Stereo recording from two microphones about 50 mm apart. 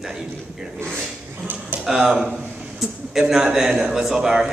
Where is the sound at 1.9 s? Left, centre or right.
Centre.